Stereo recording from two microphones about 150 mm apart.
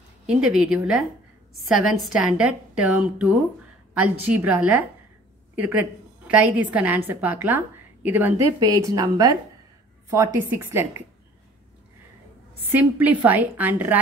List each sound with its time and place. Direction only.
0.4 s a woman's voice: 5° right (ahead or behind)
8.5 s a woman's voice: 25° right (ahead or behind)
12.9 s a woman's voice: 10° right (ahead or behind)